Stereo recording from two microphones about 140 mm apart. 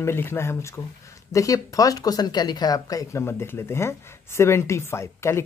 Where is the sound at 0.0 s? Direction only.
15° left (ahead or behind).